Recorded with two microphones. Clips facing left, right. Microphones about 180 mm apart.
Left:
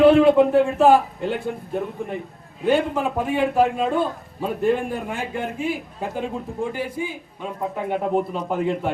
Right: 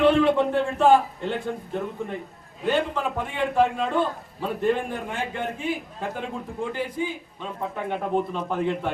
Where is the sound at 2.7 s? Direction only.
10° left (ahead or behind).